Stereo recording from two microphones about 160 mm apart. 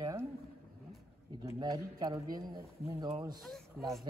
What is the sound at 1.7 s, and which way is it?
A man's voice, 25° right (ahead or behind).